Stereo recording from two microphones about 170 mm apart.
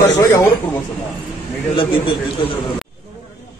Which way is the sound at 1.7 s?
30° left (ahead or behind).